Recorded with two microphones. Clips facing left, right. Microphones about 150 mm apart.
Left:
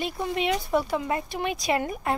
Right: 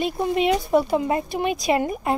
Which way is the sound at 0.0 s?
15° right (ahead or behind).